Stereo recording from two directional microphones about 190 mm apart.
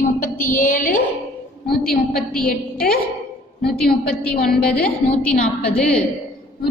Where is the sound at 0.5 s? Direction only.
45° left (ahead or behind).